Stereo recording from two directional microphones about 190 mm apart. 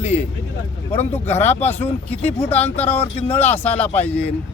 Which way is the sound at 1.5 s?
35° left (ahead or behind).